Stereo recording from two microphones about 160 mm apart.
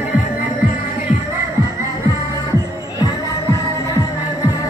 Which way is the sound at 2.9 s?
25° left (ahead or behind).